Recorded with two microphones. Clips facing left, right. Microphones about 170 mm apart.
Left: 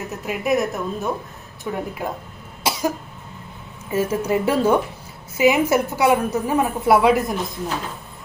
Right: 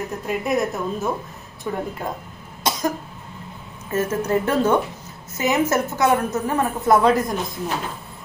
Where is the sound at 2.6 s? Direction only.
10° left (ahead or behind).